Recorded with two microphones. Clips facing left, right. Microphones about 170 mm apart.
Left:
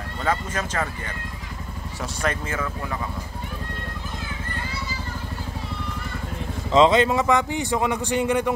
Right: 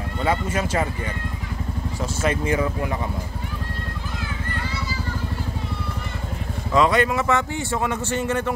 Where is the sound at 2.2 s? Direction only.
10° right (ahead or behind).